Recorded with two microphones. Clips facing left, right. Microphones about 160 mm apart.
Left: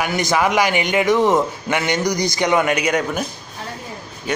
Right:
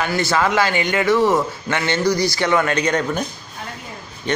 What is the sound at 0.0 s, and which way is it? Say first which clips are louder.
A man's voice: left 1 dB; 15° left (ahead or behind).